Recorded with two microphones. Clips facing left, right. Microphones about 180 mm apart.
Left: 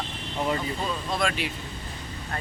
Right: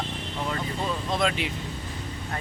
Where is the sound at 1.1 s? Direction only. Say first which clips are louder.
Right 2 dB; 20° right (ahead or behind).